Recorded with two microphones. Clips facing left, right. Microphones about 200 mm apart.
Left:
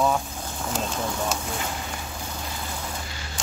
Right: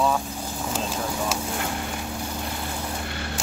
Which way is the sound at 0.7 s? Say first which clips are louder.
Even; 5° right (ahead or behind).